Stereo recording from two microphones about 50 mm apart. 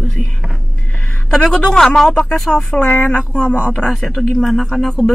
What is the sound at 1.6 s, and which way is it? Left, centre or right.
Speech, centre.